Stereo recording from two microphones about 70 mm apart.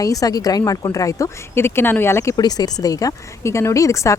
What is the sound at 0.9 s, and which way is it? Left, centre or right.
Speech, left.